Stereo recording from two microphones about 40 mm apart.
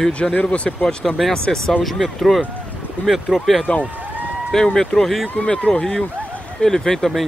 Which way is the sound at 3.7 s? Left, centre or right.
Left.